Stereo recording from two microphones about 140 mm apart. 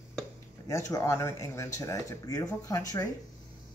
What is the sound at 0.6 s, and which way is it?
Speech, 25° left (ahead or behind).